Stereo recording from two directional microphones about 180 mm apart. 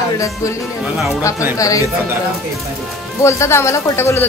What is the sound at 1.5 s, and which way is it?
Music, 20° left (ahead or behind).